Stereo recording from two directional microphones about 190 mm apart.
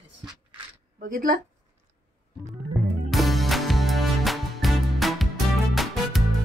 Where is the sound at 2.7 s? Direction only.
Centre (ahead or behind).